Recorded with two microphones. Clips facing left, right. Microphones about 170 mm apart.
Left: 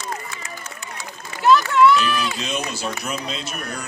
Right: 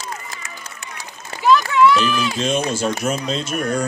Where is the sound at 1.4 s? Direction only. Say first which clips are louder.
Even; centre (ahead or behind).